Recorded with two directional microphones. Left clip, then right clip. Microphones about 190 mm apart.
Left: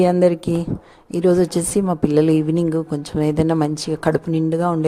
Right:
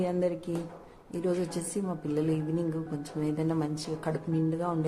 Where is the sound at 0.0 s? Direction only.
50° left (ahead or behind).